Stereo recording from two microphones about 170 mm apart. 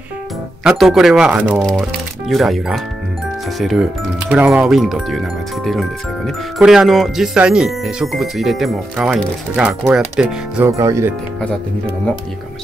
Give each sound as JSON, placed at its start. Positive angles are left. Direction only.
{"t": 0.7, "sound": "speech", "side_deg": 0}
{"t": 10.8, "sound": "speech", "side_deg": -15}